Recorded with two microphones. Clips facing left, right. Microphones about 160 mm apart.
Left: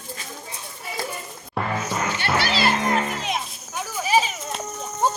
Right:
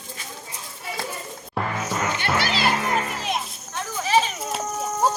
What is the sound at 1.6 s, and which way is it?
Music, centre (ahead or behind).